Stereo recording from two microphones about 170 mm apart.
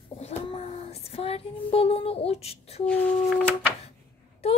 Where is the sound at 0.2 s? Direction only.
40° left (ahead or behind).